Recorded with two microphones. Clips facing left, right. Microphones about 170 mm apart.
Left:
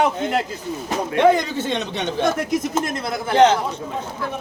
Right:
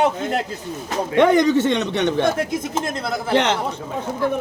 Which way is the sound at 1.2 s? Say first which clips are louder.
Right 3 dB; 65° right (ahead or behind).